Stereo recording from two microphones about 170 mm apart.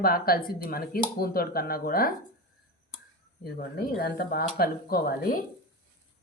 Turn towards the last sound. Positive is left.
turn(degrees=60)  # may be behind; listen again after turning